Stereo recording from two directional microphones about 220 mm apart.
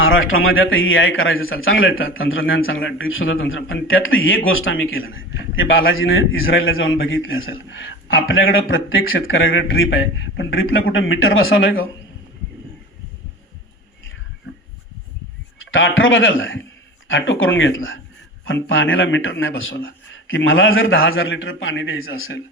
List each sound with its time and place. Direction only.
0.0 s a man's voice: 65° left (ahead or behind)
15.5 s a man's voice: 60° left (ahead or behind)